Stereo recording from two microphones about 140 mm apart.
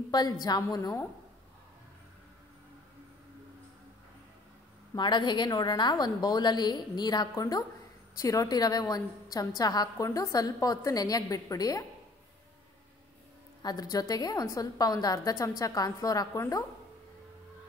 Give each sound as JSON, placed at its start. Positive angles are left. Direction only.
{"t": 0.1, "sound": "a woman's voice", "side_deg": 30}
{"t": 4.9, "sound": "a woman's voice", "side_deg": 30}
{"t": 13.6, "sound": "a woman's voice", "side_deg": 30}